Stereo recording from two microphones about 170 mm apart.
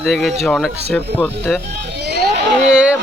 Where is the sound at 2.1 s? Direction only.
75° right (ahead or behind).